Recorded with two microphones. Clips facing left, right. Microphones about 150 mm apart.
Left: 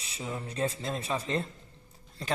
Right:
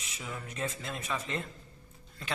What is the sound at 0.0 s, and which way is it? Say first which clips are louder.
A man's voice: left 4 dB; 30° left (ahead or behind).